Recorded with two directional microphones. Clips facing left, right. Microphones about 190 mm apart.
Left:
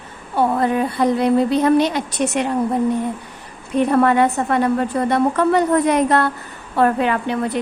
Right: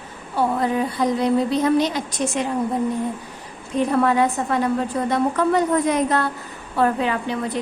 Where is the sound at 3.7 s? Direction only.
60° left (ahead or behind).